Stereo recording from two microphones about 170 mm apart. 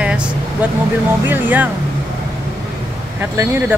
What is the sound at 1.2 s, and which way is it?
Speech, 10° right (ahead or behind).